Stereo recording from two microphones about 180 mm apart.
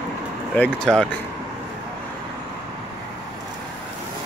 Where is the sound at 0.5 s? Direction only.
5° left (ahead or behind).